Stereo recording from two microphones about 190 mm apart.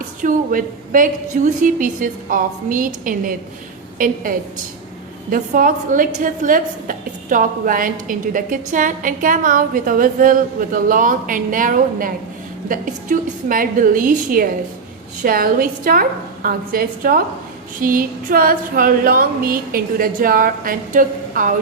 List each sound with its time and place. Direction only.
0.2 s a woman's voice: 45° right (ahead or behind)